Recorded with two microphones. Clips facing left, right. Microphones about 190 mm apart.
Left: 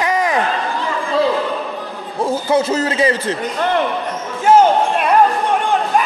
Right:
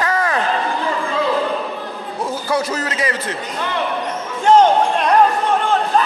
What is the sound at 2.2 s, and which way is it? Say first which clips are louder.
A man's voice: left 5 dB; 25° left (ahead or behind).